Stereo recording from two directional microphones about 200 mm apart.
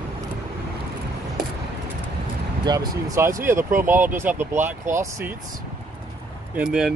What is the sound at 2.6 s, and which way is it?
Speech, 20° right (ahead or behind).